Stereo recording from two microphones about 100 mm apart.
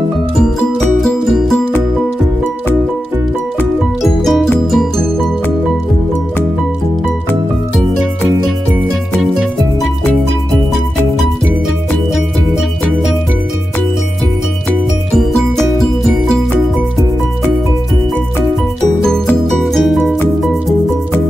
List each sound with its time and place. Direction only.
0.4 s music: 5° left (ahead or behind)
4.0 s music: centre (ahead or behind)
9.2 s music: 5° right (ahead or behind)
19.4 s music: centre (ahead or behind)